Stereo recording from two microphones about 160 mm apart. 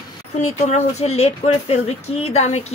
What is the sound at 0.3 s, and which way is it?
Speech, 45° left (ahead or behind).